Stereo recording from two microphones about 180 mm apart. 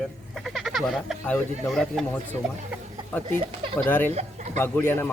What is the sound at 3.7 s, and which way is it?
A man's voice, 10° left (ahead or behind).